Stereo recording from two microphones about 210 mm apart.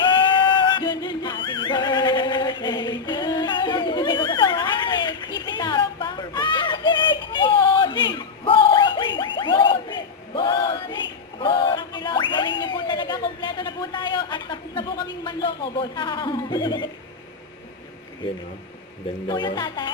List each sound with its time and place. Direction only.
0.0 s music: 20° left (ahead or behind)
11.3 s speech: 25° left (ahead or behind)
19.3 s speech: 20° left (ahead or behind)